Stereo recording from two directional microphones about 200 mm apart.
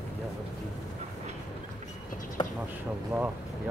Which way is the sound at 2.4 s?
25° left (ahead or behind).